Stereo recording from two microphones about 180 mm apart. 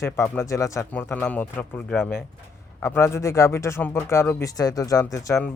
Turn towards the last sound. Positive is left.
turn(degrees=15)  # may be behind; listen again after turning